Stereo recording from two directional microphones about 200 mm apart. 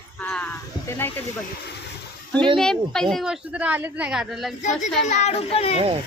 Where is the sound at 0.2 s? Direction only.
10° left (ahead or behind).